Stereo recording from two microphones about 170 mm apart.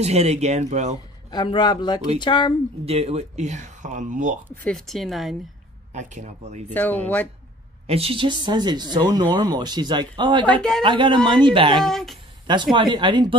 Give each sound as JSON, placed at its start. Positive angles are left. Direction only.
{"t": 0.0, "sound": "speech", "side_deg": -40}
{"t": 1.3, "sound": "a man's voice", "side_deg": 25}
{"t": 2.8, "sound": "speech", "side_deg": -35}
{"t": 4.6, "sound": "speech", "side_deg": 0}
{"t": 5.9, "sound": "speech", "side_deg": -45}
{"t": 6.7, "sound": "speech", "side_deg": 10}
{"t": 7.8, "sound": "speech", "side_deg": -35}
{"t": 10.4, "sound": "speech", "side_deg": 5}
{"t": 10.8, "sound": "speech", "side_deg": -30}
{"t": 11.8, "sound": "speech", "side_deg": 0}
{"t": 12.7, "sound": "speech", "side_deg": -30}